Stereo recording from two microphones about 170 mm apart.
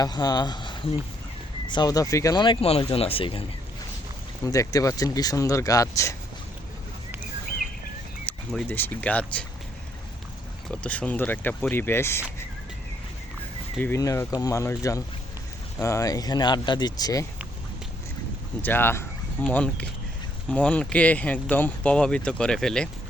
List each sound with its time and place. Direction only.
0.0 s speech: 25° left (ahead or behind)
4.4 s speech: 20° left (ahead or behind)
8.3 s speech: 10° left (ahead or behind)
10.7 s speech: 5° left (ahead or behind)
13.7 s speech: 15° left (ahead or behind)
18.6 s speech: 10° left (ahead or behind)